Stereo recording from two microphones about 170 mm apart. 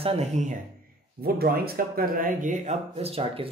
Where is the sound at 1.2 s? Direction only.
65° right (ahead or behind).